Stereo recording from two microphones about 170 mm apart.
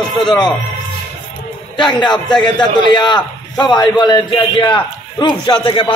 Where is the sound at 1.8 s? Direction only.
25° left (ahead or behind).